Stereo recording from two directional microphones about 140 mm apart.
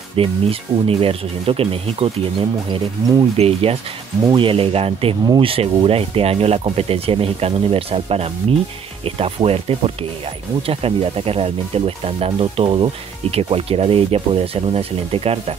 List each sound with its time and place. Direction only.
0.1 s speech: 40° right (ahead or behind)
2.7 s speech: 30° right (ahead or behind)
3.3 s speech: 45° right (ahead or behind)